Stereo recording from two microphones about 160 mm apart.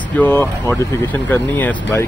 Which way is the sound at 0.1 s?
10° left (ahead or behind).